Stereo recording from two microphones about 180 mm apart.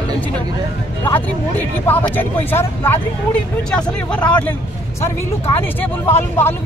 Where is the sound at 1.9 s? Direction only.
10° left (ahead or behind).